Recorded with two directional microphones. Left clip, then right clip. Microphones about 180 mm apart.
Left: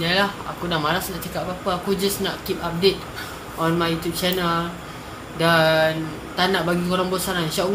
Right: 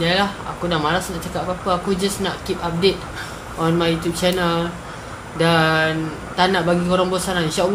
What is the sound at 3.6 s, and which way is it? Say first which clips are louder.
A man's voice: right 3 dB; 5° right (ahead or behind).